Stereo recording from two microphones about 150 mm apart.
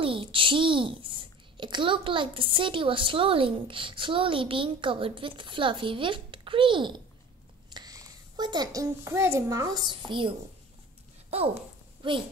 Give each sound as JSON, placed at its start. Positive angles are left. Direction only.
{"t": 0.0, "sound": "a child's voice", "side_deg": -35}